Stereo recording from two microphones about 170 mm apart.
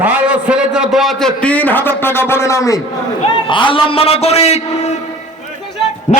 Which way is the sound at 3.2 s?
30° left (ahead or behind).